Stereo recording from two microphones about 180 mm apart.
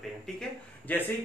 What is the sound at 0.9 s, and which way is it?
Speech, 10° left (ahead or behind).